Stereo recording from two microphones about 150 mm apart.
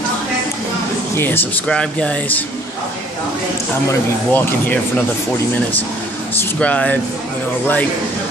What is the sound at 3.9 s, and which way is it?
Speech, 15° left (ahead or behind).